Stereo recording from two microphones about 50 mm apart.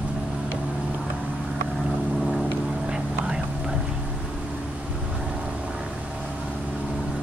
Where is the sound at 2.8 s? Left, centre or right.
Centre.